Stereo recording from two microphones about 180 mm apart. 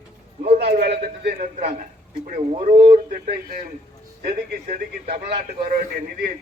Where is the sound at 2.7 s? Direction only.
30° right (ahead or behind).